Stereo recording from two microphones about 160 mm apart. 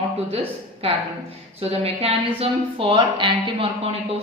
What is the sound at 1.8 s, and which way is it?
A woman's voice, 40° right (ahead or behind).